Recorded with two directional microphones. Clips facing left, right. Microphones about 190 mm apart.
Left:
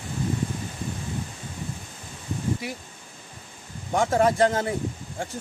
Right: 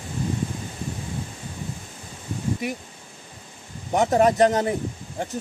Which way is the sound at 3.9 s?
20° right (ahead or behind).